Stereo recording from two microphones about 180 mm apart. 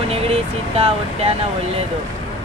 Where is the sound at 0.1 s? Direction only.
35° right (ahead or behind).